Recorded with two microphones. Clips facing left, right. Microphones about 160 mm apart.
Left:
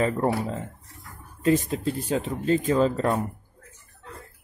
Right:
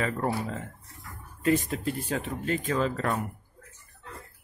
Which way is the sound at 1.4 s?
25° left (ahead or behind).